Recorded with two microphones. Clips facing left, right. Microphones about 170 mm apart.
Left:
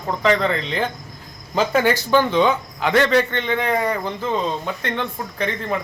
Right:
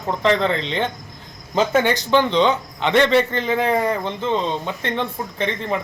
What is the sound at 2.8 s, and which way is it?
Speech, centre (ahead or behind).